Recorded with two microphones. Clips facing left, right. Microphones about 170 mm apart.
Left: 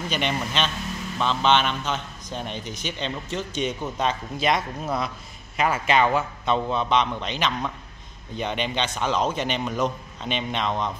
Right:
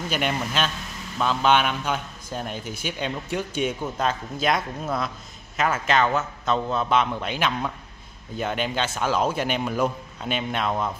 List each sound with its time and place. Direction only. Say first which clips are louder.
0.1 s a man's voice: right 1 dB; 5° right (ahead or behind)